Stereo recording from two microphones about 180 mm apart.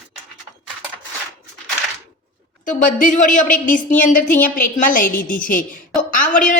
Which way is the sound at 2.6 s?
45° left (ahead or behind).